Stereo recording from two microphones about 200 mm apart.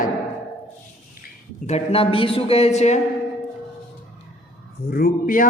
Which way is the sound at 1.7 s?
30° left (ahead or behind).